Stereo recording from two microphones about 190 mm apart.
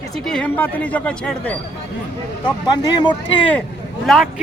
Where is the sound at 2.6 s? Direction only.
20° left (ahead or behind).